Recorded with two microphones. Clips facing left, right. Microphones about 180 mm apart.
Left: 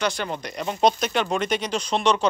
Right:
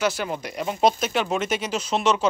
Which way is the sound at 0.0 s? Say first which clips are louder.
Right 1 dB; 5° right (ahead or behind).